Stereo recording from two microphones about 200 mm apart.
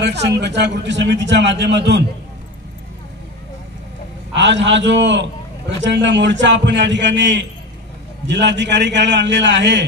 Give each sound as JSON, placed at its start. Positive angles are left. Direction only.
{"t": 0.0, "sound": "a man's voice", "side_deg": -60}
{"t": 4.4, "sound": "a man's voice", "side_deg": -65}